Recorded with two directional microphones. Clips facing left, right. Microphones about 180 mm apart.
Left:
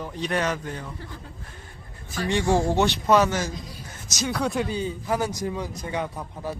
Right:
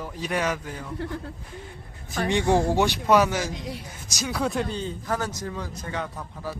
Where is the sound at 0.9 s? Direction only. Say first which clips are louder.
Right 9 dB; 65° right (ahead or behind).